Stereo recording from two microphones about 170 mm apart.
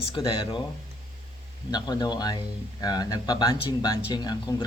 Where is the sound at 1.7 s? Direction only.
25° left (ahead or behind).